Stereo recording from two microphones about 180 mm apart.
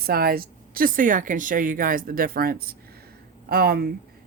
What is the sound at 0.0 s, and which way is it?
Speech, 55° right (ahead or behind).